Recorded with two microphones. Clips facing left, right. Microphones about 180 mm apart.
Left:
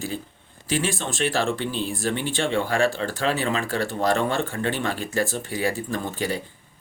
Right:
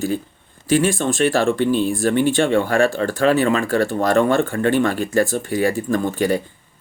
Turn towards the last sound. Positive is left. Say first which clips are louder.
# right 8 dB
turn(degrees=-50)  # may be behind; listen again after turning